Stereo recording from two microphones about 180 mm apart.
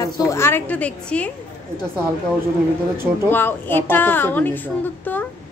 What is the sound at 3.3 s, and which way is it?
A woman's voice, 10° left (ahead or behind).